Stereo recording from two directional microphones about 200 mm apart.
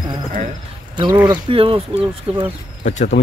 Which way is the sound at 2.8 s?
40° left (ahead or behind).